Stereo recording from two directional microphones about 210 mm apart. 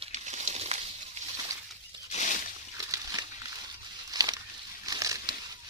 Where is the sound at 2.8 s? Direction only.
15° right (ahead or behind).